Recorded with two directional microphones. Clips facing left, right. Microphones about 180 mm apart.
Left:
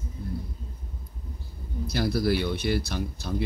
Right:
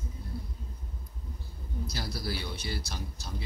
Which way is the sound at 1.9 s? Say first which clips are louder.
Left 13 dB; 60° left (ahead or behind).